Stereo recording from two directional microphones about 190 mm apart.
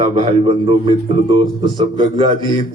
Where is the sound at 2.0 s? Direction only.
25° right (ahead or behind).